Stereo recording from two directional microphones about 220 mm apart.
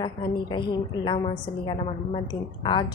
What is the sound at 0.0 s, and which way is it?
A woman's voice, 20° left (ahead or behind).